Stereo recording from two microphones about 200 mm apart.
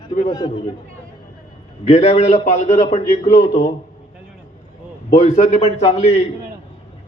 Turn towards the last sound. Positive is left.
turn(degrees=30)  # may be behind; listen again after turning